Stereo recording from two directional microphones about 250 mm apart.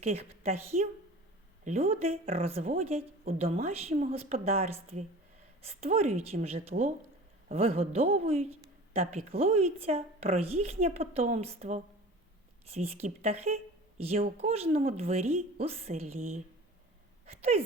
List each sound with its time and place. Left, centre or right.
0.0 s a woman's voice: right
1.6 s a woman's voice: right
16.0 s speech: right
17.2 s a sound: right